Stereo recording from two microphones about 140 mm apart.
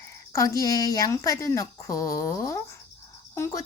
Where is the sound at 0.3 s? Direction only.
25° left (ahead or behind).